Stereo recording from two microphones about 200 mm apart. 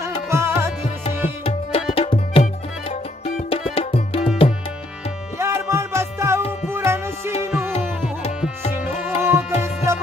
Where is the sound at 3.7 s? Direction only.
30° left (ahead or behind).